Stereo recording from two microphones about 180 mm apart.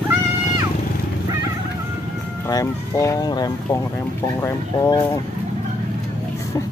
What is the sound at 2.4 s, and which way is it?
Speech, 15° left (ahead or behind).